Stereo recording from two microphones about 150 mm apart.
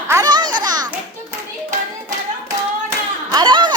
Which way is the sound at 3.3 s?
30° right (ahead or behind).